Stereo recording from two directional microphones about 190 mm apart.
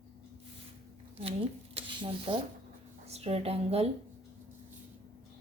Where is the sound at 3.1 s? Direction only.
35° right (ahead or behind).